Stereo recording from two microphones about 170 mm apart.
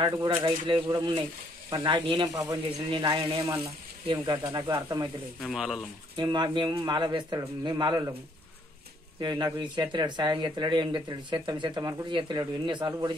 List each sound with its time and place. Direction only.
0.4 s speech: 30° right (ahead or behind)
5.4 s speech: centre (ahead or behind)
6.1 s speech: 25° right (ahead or behind)
9.2 s speech: 25° right (ahead or behind)